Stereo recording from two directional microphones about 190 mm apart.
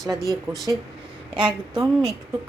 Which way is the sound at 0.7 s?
20° right (ahead or behind).